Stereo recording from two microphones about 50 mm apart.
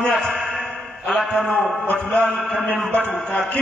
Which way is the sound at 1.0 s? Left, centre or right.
Centre.